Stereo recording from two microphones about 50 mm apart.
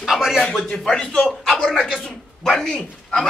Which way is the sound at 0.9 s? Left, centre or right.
Left.